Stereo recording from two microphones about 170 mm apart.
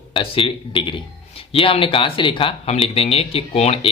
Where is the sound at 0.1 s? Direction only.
30° left (ahead or behind).